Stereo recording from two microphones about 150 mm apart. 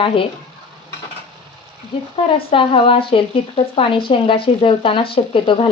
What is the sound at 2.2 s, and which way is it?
Speech, 35° left (ahead or behind).